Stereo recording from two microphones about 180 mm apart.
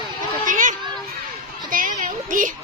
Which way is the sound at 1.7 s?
50° right (ahead or behind).